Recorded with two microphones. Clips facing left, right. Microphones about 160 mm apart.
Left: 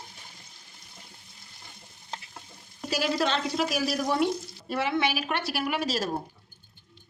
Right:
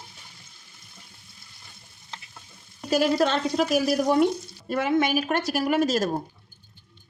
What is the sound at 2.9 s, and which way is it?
A woman's voice, 50° right (ahead or behind).